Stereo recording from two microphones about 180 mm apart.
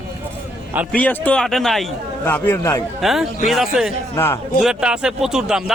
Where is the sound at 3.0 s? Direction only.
Centre (ahead or behind).